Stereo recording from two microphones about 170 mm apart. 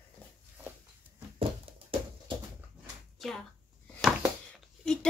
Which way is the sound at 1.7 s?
35° right (ahead or behind).